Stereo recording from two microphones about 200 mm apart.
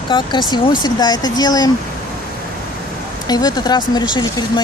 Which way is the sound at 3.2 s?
20° left (ahead or behind).